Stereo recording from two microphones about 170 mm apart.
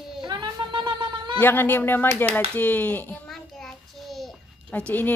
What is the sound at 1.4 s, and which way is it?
Speech, 10° left (ahead or behind).